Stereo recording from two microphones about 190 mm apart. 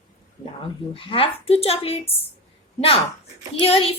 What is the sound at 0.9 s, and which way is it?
A woman's voice, 30° left (ahead or behind).